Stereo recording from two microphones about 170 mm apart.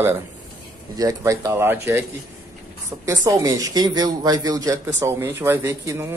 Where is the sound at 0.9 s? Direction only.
20° right (ahead or behind).